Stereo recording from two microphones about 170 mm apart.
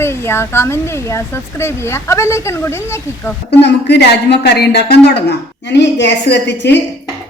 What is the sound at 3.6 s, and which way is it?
A woman's voice, 80° left.